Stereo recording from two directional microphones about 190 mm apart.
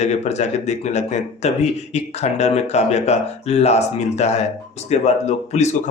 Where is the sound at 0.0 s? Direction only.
35° left (ahead or behind).